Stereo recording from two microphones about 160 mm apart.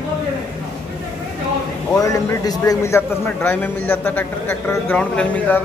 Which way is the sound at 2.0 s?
20° left (ahead or behind).